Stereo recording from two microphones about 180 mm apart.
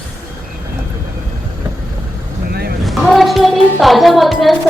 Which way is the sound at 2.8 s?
Centre (ahead or behind).